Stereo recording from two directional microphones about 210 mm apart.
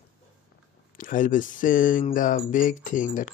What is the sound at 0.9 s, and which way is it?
Speech, 40° left (ahead or behind).